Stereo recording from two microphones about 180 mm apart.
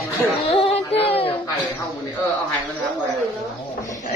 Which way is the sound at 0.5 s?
30° left (ahead or behind).